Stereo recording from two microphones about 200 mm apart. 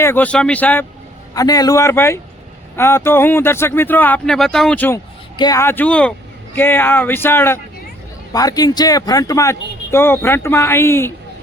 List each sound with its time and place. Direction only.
0.0 s speech: 10° left (ahead or behind)